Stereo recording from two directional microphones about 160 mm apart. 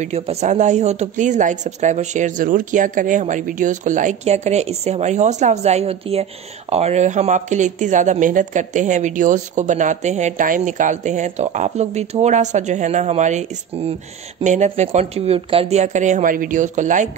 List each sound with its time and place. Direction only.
0.0 s speech: 40° right (ahead or behind)